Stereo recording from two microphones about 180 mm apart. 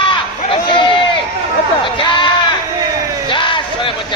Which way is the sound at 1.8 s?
25° left (ahead or behind).